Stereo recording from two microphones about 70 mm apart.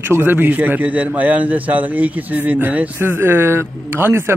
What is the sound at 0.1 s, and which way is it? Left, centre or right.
A man's voice, right.